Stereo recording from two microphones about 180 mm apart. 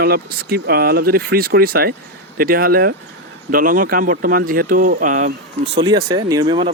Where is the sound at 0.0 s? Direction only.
60° right (ahead or behind).